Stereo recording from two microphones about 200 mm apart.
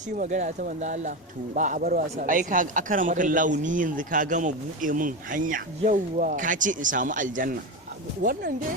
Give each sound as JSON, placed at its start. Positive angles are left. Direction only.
{"t": 0.2, "sound": "speech", "side_deg": -35}